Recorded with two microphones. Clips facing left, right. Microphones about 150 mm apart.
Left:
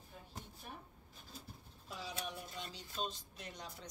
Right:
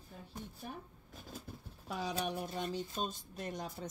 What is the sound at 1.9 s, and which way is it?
Speech, 65° right (ahead or behind).